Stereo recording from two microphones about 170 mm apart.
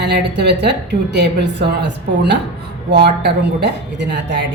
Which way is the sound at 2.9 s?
85° right.